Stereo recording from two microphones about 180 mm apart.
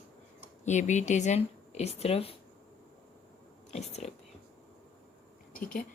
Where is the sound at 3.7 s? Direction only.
35° left (ahead or behind).